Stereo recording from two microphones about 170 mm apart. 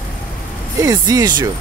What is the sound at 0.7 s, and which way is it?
Speech, 20° right (ahead or behind).